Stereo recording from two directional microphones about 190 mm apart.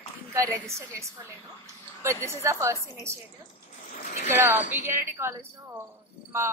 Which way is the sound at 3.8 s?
45° left (ahead or behind).